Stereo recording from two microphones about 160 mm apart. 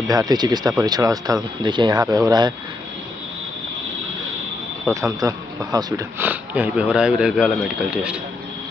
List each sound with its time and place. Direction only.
0.1 s speech: 25° right (ahead or behind)
4.8 s speech: 20° right (ahead or behind); by 8.2 s 5° right (ahead or behind)